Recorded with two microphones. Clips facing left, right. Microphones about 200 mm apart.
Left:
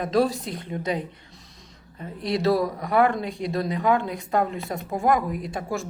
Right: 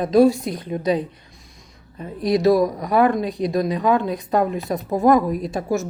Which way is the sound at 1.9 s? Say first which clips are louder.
Right 6 dB; 15° right (ahead or behind).